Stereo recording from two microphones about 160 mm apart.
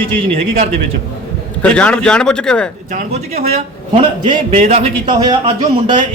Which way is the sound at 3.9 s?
40° right (ahead or behind).